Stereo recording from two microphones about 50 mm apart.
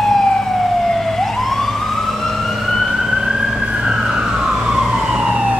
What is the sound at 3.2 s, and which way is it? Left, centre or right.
Emergency vehicle, centre.